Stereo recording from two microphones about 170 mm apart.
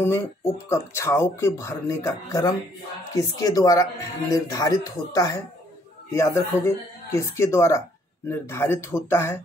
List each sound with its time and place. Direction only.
0.0 s speech: 15° left (ahead or behind)